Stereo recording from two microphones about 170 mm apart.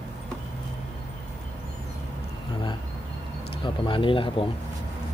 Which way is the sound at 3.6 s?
30° left (ahead or behind).